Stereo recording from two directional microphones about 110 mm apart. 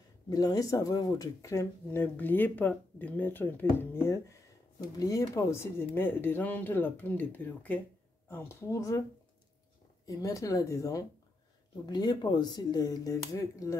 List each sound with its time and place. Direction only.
0.3 s speech: 35° left (ahead or behind)
10.0 s speech: 30° left (ahead or behind)